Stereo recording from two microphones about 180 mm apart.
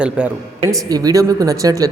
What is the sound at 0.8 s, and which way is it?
Speech, 20° right (ahead or behind).